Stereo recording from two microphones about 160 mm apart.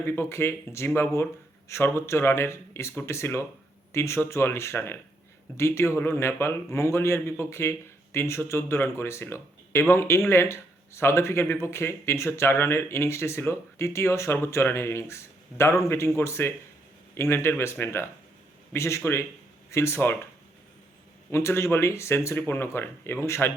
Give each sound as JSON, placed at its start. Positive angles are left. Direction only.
{"t": 0.0, "sound": "speech", "side_deg": 15}
{"t": 21.2, "sound": "speech", "side_deg": 15}